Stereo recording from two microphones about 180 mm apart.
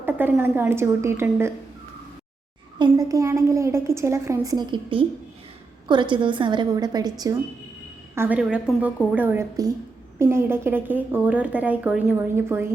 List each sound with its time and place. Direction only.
0.0 s a woman's voice: 10° right (ahead or behind)
2.7 s a woman's voice: 20° right (ahead or behind)
8.1 s a woman's voice: 10° right (ahead or behind)